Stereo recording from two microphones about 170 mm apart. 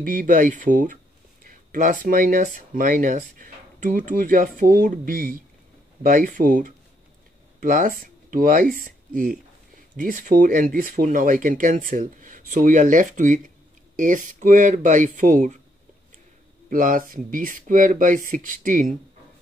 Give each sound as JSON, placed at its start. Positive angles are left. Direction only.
{"t": 0.0, "sound": "speech", "side_deg": -55}
{"t": 16.6, "sound": "speech", "side_deg": -55}